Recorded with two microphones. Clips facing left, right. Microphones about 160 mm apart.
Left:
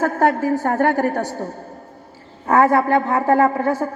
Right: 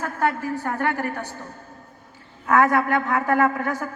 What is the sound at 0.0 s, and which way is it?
A woman's voice, 45° left (ahead or behind).